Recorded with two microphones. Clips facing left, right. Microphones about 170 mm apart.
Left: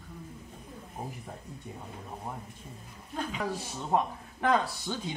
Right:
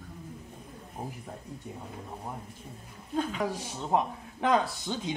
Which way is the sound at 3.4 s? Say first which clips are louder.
Right 1 dB; 15° right (ahead or behind).